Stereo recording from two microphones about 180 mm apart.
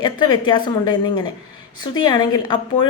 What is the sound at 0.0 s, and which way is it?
A woman's voice, 25° left (ahead or behind).